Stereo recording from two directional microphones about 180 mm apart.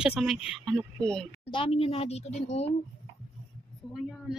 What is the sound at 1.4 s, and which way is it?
Speech, 30° left (ahead or behind).